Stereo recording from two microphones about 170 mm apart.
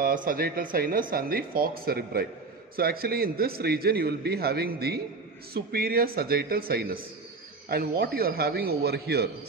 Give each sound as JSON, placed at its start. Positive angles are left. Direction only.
{"t": 0.0, "sound": "a man's voice", "side_deg": -55}